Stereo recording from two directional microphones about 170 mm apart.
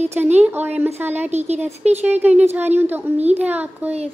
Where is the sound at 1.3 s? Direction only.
40° right (ahead or behind).